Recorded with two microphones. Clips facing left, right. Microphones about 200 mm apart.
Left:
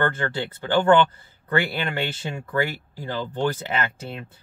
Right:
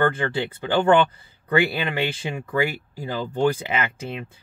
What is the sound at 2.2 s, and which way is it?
Speech, 10° right (ahead or behind).